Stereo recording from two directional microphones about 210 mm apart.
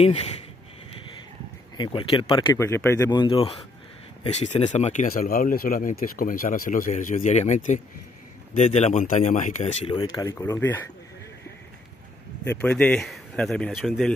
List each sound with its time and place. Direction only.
1.8 s speech: 25° left (ahead or behind)
10.1 s speech: 15° left (ahead or behind)
12.4 s speech: 5° left (ahead or behind)